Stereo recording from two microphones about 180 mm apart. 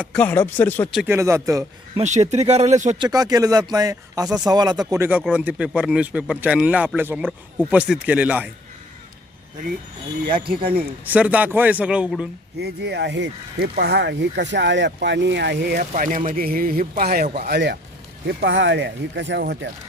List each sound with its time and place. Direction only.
0.0 s speech: 10° left (ahead or behind)
1.0 s a man's voice: 15° right (ahead or behind)
2.0 s speech: 40° right (ahead or behind)
3.0 s a man's voice: 20° right (ahead or behind)
10.2 s speech: 55° right (ahead or behind)
11.1 s a man's voice: 10° right (ahead or behind)
12.5 s speech: 65° right (ahead or behind); by 17.2 s 45° right (ahead or behind)
17.5 s speech: 80° right